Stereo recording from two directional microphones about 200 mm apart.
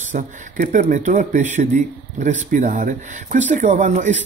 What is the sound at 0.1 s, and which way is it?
Speech, 40° right (ahead or behind).